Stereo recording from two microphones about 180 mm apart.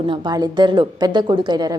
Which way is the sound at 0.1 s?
25° right (ahead or behind).